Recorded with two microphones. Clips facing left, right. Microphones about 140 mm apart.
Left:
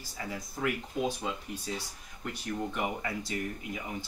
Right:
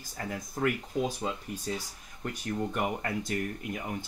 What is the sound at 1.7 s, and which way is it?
Speech, 45° right (ahead or behind).